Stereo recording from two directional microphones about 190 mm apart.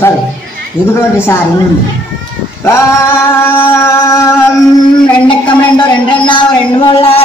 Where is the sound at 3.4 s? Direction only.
15° left (ahead or behind).